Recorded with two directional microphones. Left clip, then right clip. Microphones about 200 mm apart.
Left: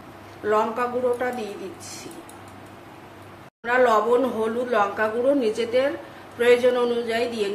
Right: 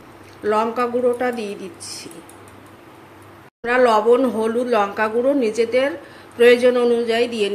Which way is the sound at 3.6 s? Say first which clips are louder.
Right 4 dB; 35° right (ahead or behind).